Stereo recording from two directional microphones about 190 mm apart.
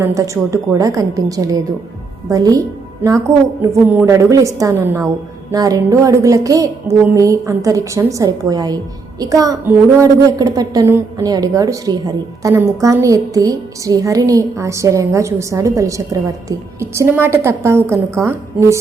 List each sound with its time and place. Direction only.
0.0 s a woman's voice: 15° right (ahead or behind)